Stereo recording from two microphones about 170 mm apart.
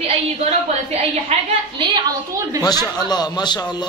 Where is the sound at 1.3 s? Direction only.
40° right (ahead or behind).